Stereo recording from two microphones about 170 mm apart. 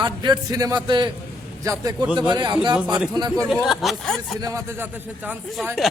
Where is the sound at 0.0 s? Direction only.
25° right (ahead or behind).